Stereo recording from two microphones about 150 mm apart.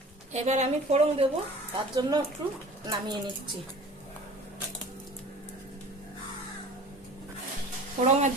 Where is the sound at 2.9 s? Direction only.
30° right (ahead or behind).